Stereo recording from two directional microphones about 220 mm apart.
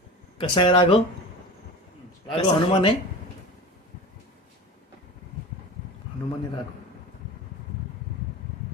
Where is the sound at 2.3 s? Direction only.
20° left (ahead or behind).